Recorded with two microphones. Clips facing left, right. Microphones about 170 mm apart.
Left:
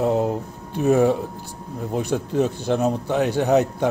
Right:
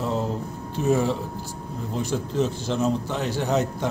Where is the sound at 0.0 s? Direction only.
60° left (ahead or behind).